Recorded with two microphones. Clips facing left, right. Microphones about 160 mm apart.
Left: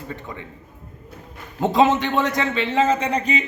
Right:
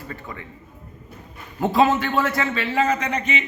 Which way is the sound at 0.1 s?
20° left (ahead or behind).